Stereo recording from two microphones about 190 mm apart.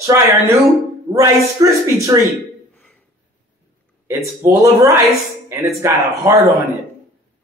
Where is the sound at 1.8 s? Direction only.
15° right (ahead or behind).